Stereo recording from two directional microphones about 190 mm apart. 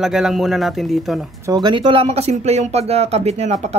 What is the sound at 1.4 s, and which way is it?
Speech, 20° right (ahead or behind).